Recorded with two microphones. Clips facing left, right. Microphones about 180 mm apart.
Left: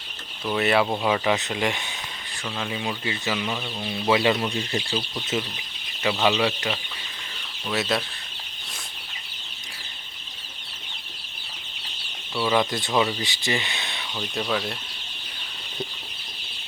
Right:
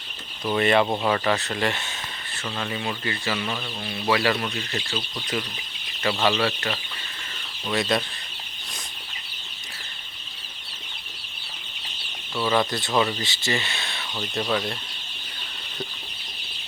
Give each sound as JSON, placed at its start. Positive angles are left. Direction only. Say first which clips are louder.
{"t": 0.4, "sound": "speech", "louder": "right 1 dB", "side_deg": 5}
{"t": 6.0, "sound": "speech", "louder": "left 1 dB", "side_deg": 10}
{"t": 12.4, "sound": "speech", "louder": "even", "side_deg": 10}
{"t": 14.2, "sound": "speech", "louder": "right 1 dB", "side_deg": 0}